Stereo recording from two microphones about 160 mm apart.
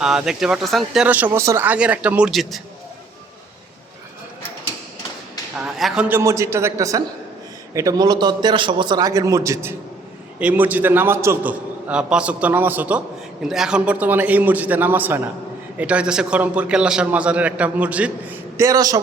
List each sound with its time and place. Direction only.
0.0 s a man's voice: 5° right (ahead or behind)
5.5 s a man's voice: 5° right (ahead or behind); by 18.9 s 20° right (ahead or behind)